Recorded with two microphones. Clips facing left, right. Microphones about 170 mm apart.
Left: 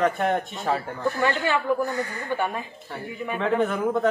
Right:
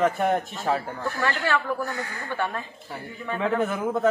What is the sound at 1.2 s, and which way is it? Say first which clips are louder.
Speech: left 1 dB; 15° left (ahead or behind).